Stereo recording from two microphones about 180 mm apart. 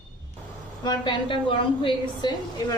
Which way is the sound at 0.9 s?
25° left (ahead or behind).